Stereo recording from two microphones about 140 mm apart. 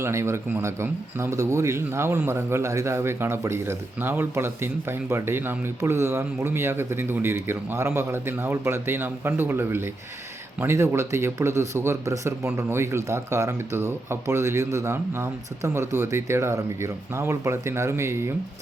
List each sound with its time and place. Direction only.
0.0 s speech: 20° right (ahead or behind)